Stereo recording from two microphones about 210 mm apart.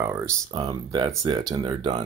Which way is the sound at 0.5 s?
20° right (ahead or behind).